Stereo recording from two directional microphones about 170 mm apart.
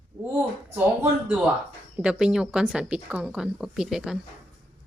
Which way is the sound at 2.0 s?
5° right (ahead or behind).